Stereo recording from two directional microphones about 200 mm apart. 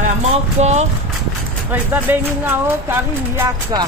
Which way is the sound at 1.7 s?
10° right (ahead or behind).